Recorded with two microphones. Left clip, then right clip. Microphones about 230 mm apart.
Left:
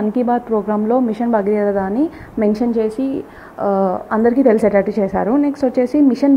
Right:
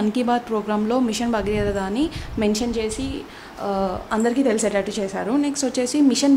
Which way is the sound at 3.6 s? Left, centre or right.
Centre.